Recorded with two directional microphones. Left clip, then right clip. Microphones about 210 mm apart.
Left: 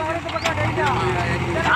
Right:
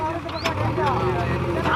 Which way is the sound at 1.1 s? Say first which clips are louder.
Left 2 dB; 30° left (ahead or behind).